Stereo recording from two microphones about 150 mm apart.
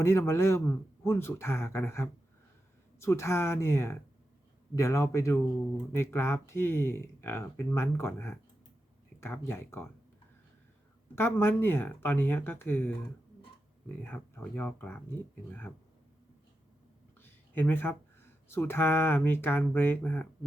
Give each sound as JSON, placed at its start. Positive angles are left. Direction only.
{"t": 0.0, "sound": "a man's voice", "side_deg": 15}
{"t": 11.1, "sound": "speech", "side_deg": 15}
{"t": 17.2, "sound": "a sound", "side_deg": 15}
{"t": 18.4, "sound": "speech", "side_deg": 15}